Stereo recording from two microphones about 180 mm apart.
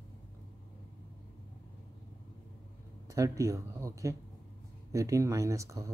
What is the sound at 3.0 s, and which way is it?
Speech, 20° right (ahead or behind).